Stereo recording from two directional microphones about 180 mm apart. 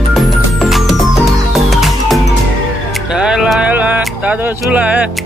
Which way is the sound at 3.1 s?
5° right (ahead or behind).